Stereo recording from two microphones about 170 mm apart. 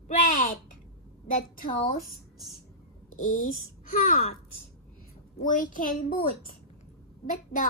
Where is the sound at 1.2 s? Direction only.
55° left (ahead or behind).